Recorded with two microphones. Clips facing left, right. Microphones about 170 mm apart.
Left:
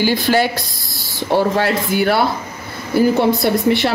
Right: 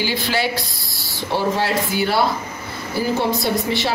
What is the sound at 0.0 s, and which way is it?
Speech, 50° left (ahead or behind).